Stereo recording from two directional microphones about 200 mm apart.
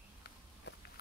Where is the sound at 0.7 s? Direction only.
55° left (ahead or behind).